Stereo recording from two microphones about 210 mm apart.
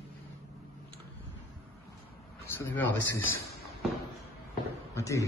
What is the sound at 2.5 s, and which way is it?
Speech, 10° left (ahead or behind).